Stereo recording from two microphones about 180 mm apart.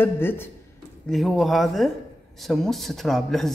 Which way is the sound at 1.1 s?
Centre (ahead or behind).